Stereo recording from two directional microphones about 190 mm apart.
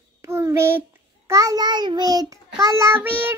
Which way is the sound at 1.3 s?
15° right (ahead or behind).